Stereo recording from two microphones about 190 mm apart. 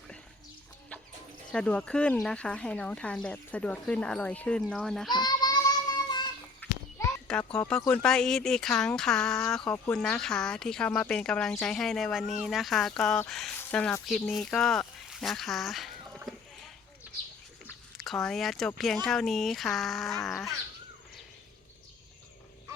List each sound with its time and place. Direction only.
1.5 s speech: 5° left (ahead or behind)
5.1 s child singing: 20° left (ahead or behind)
6.6 s children playing: 10° left (ahead or behind)
7.3 s speech: centre (ahead or behind)
14.5 s a sound: 5° left (ahead or behind)
17.9 s speech: centre (ahead or behind)